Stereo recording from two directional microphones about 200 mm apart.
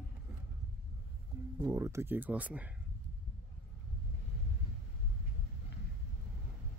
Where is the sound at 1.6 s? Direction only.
15° right (ahead or behind).